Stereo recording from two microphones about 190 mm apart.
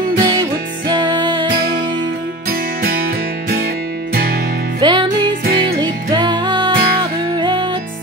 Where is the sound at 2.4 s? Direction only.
50° right (ahead or behind).